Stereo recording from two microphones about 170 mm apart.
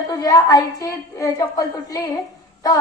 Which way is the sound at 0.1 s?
20° left (ahead or behind).